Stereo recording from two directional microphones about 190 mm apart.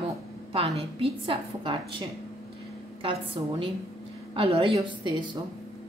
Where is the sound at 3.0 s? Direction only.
30° right (ahead or behind).